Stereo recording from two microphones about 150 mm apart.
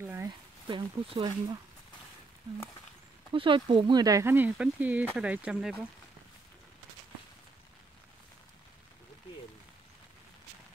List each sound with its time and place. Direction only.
0.0 s a sound: 15° right (ahead or behind)
0.7 s speech: 35° right (ahead or behind)
3.3 s speech: 35° right (ahead or behind); by 5.9 s 5° right (ahead or behind)